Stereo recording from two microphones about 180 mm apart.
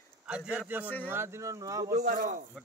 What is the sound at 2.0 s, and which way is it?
Speech, 50° right (ahead or behind).